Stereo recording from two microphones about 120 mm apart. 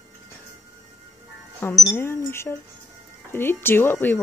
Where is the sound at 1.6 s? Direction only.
20° left (ahead or behind).